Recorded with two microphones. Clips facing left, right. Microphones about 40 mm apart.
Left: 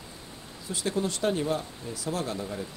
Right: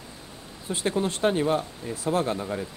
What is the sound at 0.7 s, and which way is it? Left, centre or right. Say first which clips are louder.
Speech: right 3 dB; right.